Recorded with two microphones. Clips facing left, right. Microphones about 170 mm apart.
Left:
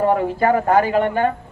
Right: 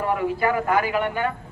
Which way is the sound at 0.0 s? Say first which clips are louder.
Left 5 dB; 35° left (ahead or behind).